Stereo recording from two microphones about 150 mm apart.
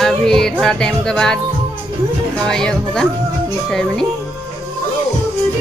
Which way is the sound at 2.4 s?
5° left (ahead or behind).